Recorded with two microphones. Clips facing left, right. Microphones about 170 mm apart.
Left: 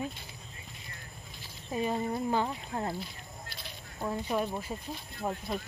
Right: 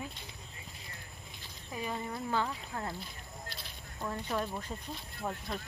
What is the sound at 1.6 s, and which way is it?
Speech, 25° left (ahead or behind).